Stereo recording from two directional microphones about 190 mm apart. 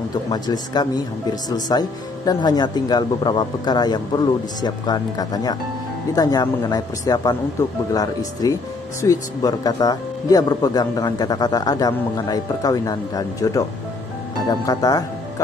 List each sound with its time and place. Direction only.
0.3 s speech: 20° left (ahead or behind)